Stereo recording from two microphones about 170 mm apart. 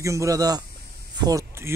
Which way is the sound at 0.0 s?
20° right (ahead or behind).